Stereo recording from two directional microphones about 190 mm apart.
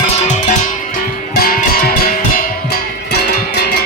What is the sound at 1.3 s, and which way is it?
Music, 50° left (ahead or behind).